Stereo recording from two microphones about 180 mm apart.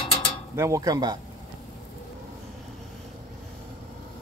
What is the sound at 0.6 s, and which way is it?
Speech, 20° right (ahead or behind).